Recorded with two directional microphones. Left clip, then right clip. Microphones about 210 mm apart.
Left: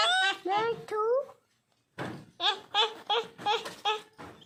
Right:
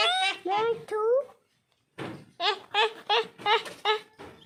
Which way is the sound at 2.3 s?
55° right (ahead or behind).